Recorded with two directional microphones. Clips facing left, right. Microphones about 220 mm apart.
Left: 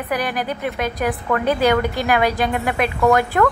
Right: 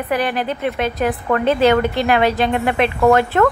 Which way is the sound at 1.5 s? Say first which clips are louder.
Right 3 dB; 15° left (ahead or behind).